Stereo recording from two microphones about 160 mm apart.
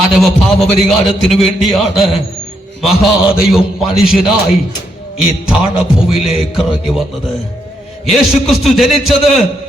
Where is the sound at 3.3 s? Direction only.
5° right (ahead or behind).